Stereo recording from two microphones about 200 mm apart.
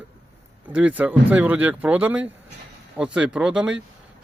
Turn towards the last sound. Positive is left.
turn(degrees=-5)  # may be behind; listen again after turning